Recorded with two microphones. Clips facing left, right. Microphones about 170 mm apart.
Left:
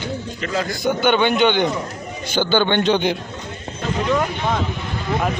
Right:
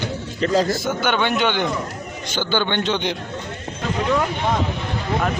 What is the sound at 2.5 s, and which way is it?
Speech, 55° left (ahead or behind).